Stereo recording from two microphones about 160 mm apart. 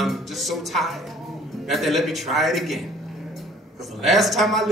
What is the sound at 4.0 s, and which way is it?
Speech, centre (ahead or behind).